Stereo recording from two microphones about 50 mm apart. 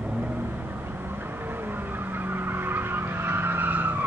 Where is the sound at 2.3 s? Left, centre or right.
Right.